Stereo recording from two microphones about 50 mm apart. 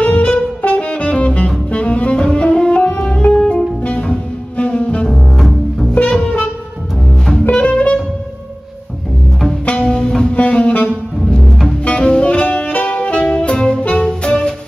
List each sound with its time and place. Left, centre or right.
0.0 s saxophone: left
0.6 s music: left
5.0 s double bass: centre
5.9 s music: centre
7.5 s saxophone: left
9.5 s music: left
10.3 s music: left
11.4 s music: centre
11.8 s music: centre